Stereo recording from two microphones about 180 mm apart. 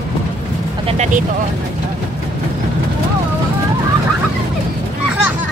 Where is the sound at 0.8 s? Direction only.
40° right (ahead or behind).